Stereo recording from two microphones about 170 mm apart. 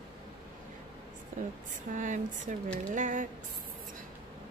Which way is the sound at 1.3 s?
50° right (ahead or behind).